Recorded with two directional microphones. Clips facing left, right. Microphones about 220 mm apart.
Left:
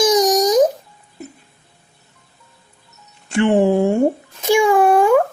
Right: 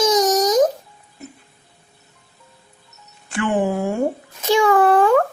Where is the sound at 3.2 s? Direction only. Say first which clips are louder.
Left 6 dB; 25° left (ahead or behind).